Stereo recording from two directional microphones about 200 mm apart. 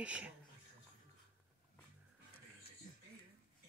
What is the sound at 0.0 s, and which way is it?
Speech, 5° right (ahead or behind).